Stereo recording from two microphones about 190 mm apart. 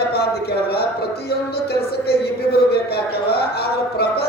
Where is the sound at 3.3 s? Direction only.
55° left (ahead or behind).